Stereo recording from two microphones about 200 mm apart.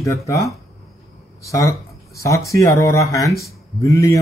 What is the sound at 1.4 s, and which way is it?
Speech, 15° left (ahead or behind).